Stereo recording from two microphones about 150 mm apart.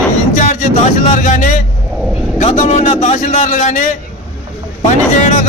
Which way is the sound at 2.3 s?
55° left (ahead or behind).